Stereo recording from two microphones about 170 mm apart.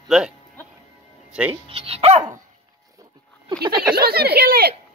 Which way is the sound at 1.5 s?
35° right (ahead or behind).